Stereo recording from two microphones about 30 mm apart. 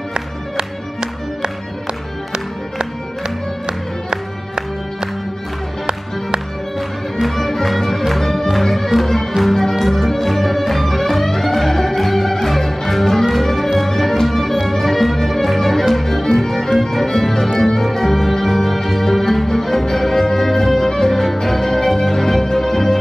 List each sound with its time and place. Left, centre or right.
0.1 s music: right
3.6 s music: right
7.2 s music: centre